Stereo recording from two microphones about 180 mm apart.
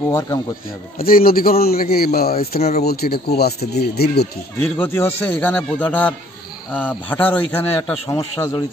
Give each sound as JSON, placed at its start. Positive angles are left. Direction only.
{"t": 0.1, "sound": "a man's voice", "side_deg": 15}
{"t": 0.9, "sound": "speech", "side_deg": 55}
{"t": 4.6, "sound": "a man's voice", "side_deg": 15}